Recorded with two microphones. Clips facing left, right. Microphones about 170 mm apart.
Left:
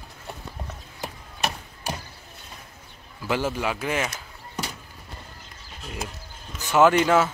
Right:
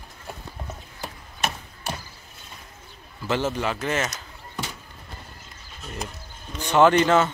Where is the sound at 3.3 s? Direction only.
10° left (ahead or behind).